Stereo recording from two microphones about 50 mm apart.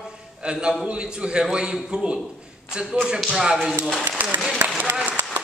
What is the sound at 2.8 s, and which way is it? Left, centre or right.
Speech, centre.